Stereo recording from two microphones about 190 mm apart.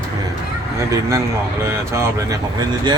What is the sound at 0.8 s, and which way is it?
Speech, 15° right (ahead or behind).